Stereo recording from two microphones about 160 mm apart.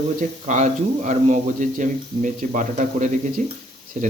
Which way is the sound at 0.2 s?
50° right (ahead or behind).